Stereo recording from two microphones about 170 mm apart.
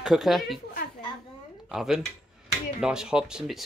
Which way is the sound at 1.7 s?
Centre (ahead or behind).